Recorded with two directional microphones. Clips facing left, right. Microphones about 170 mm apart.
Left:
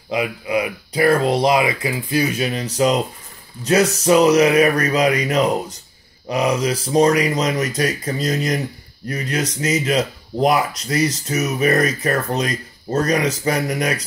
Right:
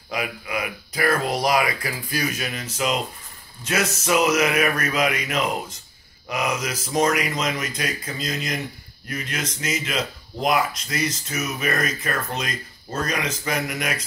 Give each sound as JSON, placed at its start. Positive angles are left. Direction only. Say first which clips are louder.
{"t": 0.1, "sound": "speech", "louder": "left 7 dB", "side_deg": 25}